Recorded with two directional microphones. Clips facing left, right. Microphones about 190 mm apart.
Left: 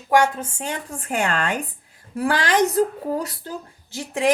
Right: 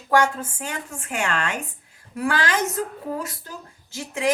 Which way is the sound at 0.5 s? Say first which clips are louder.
Left 3 dB; 30° left (ahead or behind).